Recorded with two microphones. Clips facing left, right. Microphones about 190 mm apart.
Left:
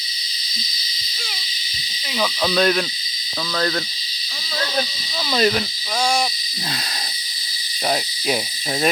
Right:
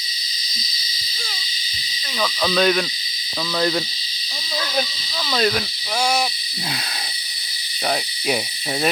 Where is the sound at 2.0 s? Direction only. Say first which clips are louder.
Left 1 dB; 10° left (ahead or behind); by 3.8 s 10° right (ahead or behind).